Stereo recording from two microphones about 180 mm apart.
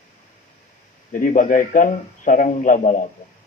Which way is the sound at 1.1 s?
45° left (ahead or behind).